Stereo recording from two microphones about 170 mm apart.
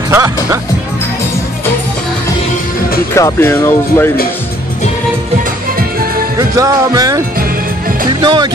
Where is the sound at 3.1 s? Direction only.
15° left (ahead or behind).